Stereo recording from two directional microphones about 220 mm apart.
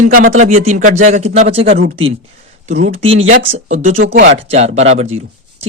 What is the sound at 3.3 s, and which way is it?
Speech, 30° right (ahead or behind).